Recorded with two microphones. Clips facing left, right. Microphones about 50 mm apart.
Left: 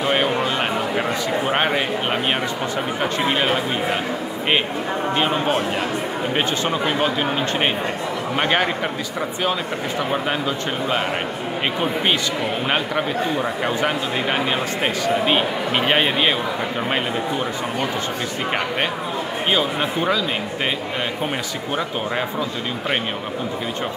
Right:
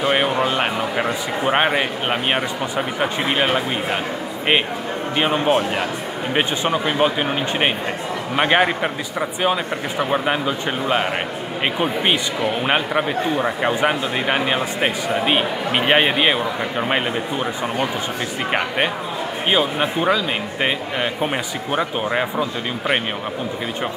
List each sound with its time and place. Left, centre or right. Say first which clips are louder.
0.0 s a sound: right 1 dB; centre
1.5 s a man's voice: right 4 dB; centre
5.1 s a man's voice: right 3 dB; centre
12.6 s a man's voice: right 2 dB; centre
19.5 s a man's voice: right 2 dB; centre
21.7 s a man's voice: right 3 dB; centre